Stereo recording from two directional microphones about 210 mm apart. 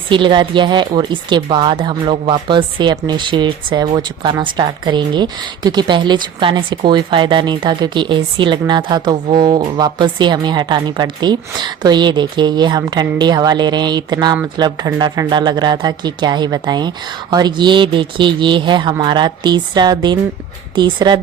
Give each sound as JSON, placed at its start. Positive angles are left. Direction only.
{"t": 0.1, "sound": "speech", "side_deg": -20}